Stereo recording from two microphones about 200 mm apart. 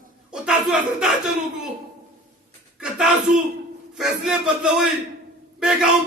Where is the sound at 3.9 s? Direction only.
Centre (ahead or behind).